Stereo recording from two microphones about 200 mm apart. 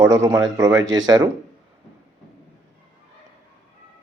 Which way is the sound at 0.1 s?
15° right (ahead or behind).